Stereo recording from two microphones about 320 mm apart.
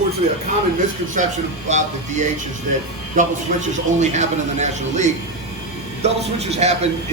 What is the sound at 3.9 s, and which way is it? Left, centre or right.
A man's voice, right.